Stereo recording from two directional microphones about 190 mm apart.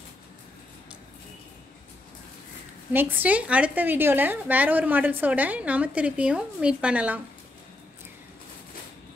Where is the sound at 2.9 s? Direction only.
10° right (ahead or behind).